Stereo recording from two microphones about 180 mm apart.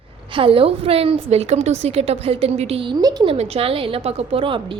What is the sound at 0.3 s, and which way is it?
A woman's voice, 30° right (ahead or behind).